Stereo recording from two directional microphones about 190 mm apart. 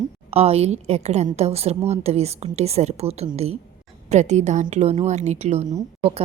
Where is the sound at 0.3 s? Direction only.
35° right (ahead or behind).